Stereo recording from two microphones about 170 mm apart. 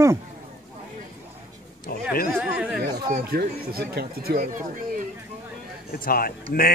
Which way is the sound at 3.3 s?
65° right (ahead or behind).